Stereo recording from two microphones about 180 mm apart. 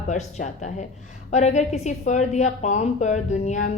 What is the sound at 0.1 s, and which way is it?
A woman's voice, 40° left (ahead or behind).